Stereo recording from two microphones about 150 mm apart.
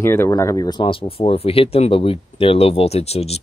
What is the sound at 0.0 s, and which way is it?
Speech, 15° left (ahead or behind).